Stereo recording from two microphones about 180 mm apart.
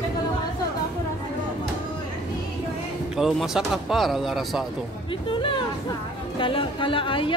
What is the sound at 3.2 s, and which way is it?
Speech, centre (ahead or behind).